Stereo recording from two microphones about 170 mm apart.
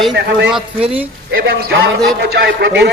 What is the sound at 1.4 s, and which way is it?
A man's voice, 75° right (ahead or behind).